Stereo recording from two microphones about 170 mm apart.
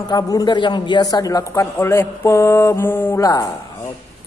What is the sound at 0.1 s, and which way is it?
Speech, 25° left (ahead or behind).